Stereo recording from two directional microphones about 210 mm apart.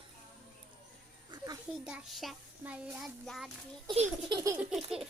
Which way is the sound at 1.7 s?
5° right (ahead or behind).